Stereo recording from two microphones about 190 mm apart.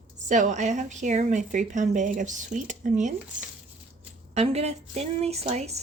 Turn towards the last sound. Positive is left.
turn(degrees=-35)  # may be behind; listen again after turning